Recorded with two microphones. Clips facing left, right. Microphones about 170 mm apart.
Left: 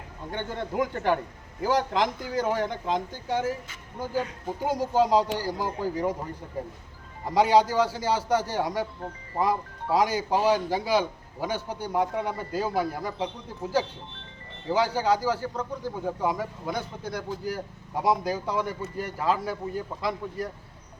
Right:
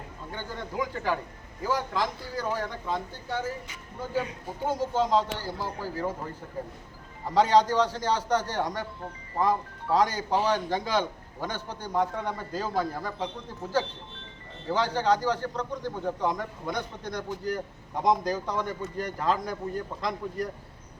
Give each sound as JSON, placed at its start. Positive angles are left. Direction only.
{"t": 0.3, "sound": "a man's voice", "side_deg": 60}
{"t": 2.4, "sound": "a man's voice", "side_deg": 20}
{"t": 4.6, "sound": "a man's voice", "side_deg": 10}
{"t": 7.3, "sound": "a man's voice", "side_deg": 10}